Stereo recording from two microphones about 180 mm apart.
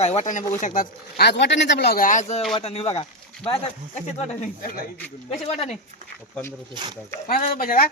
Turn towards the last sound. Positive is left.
turn(degrees=50)  # may be behind; listen again after turning